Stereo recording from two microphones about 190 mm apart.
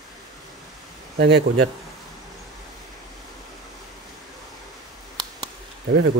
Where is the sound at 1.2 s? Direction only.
60° right (ahead or behind).